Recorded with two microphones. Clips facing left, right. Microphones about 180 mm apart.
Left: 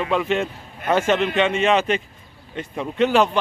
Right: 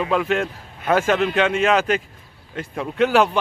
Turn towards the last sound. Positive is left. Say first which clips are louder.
# even
turn(degrees=-5)  # may be behind; listen again after turning